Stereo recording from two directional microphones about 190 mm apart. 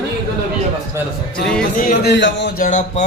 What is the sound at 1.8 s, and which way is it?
Speech, 55° left (ahead or behind).